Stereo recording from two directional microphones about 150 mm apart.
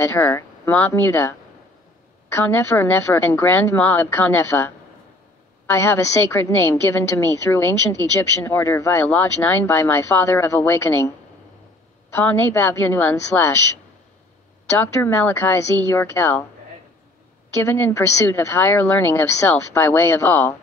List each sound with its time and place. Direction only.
0.0 s a woman's voice: 15° left (ahead or behind)
14.8 s a woman's voice: 15° left (ahead or behind)
17.6 s a woman's voice: 15° left (ahead or behind)